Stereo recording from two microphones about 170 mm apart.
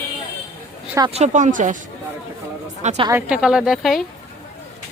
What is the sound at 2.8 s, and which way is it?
Speech, 40° right (ahead or behind).